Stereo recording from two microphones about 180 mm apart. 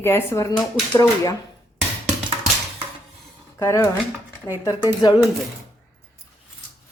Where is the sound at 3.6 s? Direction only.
15° left (ahead or behind).